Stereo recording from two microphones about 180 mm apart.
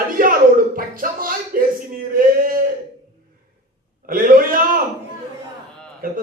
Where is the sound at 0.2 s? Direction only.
50° right (ahead or behind).